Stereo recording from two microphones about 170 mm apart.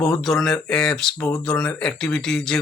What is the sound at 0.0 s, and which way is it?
Speech, 5° left (ahead or behind).